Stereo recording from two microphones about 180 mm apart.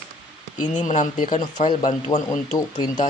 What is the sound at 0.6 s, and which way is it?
Speech, 45° left (ahead or behind).